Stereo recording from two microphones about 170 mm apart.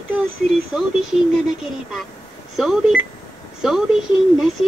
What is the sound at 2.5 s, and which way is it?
Speech, centre (ahead or behind).